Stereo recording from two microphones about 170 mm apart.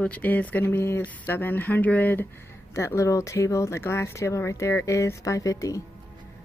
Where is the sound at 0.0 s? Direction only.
10° left (ahead or behind).